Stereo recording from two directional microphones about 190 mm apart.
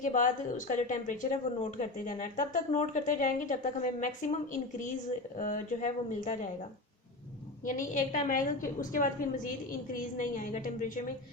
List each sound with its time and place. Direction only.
0.0 s a woman's voice: 40° left (ahead or behind)
7.6 s a woman's voice: 45° left (ahead or behind)